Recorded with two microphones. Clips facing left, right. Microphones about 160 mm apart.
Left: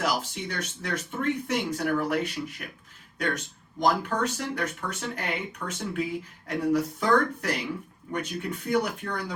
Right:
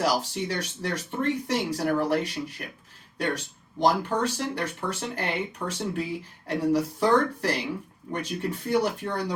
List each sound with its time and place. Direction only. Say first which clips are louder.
0.0 s speech: right 3 dB; 35° right (ahead or behind)